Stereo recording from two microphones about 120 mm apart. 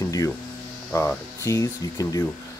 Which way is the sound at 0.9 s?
25° left (ahead or behind).